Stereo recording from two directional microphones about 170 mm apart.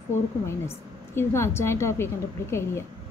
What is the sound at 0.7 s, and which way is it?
A woman's voice, 15° left (ahead or behind).